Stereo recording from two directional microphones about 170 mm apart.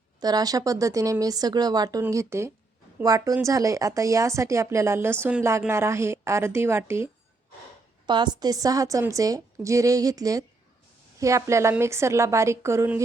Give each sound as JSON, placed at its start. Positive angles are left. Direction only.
{"t": 0.2, "sound": "a woman's voice", "side_deg": -25}
{"t": 8.0, "sound": "a woman's voice", "side_deg": -25}